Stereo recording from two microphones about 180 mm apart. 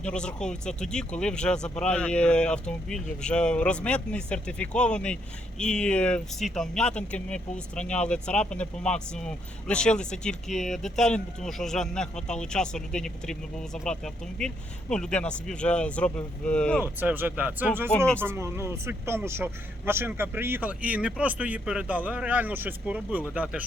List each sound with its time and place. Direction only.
0.0 s speech: 5° left (ahead or behind)
16.8 s speech: 10° right (ahead or behind)
17.9 s speech: 5° left (ahead or behind)
18.2 s speech: 15° right (ahead or behind)